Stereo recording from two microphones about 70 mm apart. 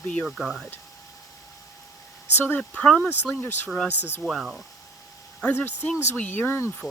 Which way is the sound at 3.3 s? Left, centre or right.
Left.